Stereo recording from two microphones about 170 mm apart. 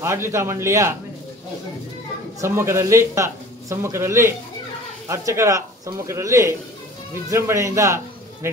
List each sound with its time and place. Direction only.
0.0 s a man's voice: 15° right (ahead or behind)
2.4 s a man's voice: 15° right (ahead or behind)